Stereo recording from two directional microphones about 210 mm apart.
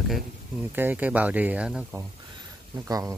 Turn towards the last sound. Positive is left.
turn(degrees=-15)  # may be behind; listen again after turning